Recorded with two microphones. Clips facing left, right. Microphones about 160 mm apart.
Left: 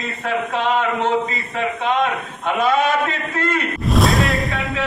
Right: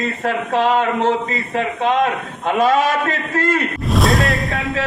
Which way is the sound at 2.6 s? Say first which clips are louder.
Right 2 dB; 40° right (ahead or behind).